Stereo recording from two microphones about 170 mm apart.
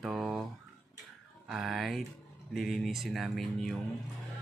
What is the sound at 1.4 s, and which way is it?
Speech, centre (ahead or behind).